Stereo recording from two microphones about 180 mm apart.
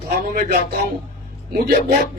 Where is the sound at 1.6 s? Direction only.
60° right (ahead or behind).